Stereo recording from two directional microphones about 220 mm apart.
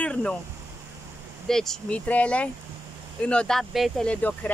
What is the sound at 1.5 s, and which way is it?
Speech, centre (ahead or behind).